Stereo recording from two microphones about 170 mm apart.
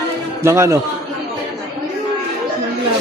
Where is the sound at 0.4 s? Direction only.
15° right (ahead or behind).